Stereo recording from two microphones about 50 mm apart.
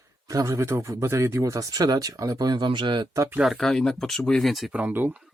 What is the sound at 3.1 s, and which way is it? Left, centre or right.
Speech, right.